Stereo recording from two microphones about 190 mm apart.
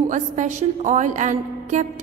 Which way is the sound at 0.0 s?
40° right (ahead or behind).